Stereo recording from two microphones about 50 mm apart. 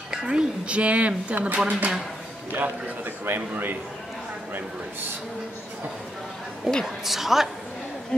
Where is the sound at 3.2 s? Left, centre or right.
Right.